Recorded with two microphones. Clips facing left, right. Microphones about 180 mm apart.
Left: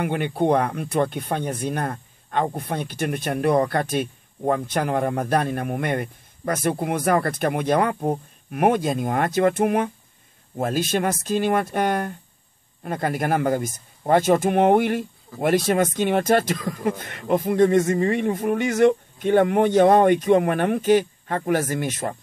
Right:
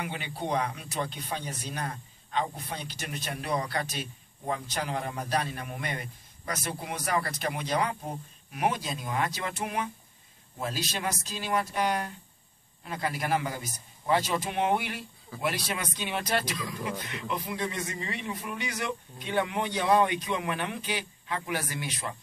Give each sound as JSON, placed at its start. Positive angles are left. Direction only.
{"t": 0.0, "sound": "speech", "side_deg": 55}